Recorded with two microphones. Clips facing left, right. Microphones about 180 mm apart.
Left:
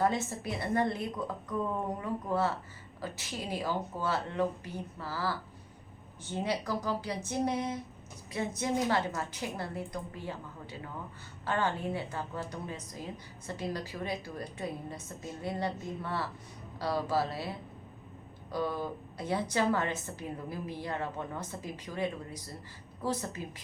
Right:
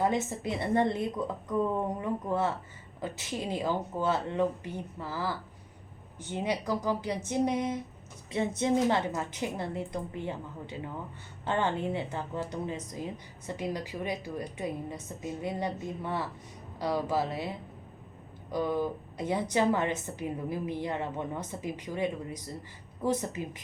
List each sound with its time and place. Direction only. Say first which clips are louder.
0.0 s a woman's voice: right 2 dB; 20° right (ahead or behind)
18.5 s a woman's voice: right 4 dB; 15° right (ahead or behind)